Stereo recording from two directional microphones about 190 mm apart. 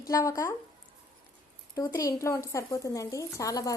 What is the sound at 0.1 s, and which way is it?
Speech, 15° left (ahead or behind).